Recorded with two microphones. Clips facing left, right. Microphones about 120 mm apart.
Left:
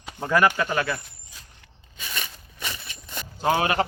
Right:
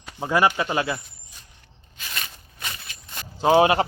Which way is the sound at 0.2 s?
20° right (ahead or behind).